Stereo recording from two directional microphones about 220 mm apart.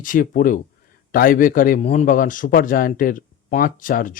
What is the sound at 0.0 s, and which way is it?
Speech, 40° left (ahead or behind).